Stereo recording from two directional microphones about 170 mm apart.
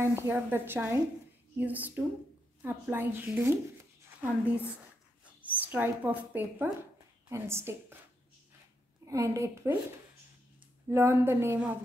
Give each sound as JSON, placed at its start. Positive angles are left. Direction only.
{"t": 0.1, "sound": "a woman's voice", "side_deg": -15}
{"t": 4.0, "sound": "a sound", "side_deg": -10}
{"t": 5.2, "sound": "a woman's voice", "side_deg": -10}
{"t": 9.0, "sound": "a woman's voice", "side_deg": -20}
{"t": 10.9, "sound": "a woman's voice", "side_deg": -15}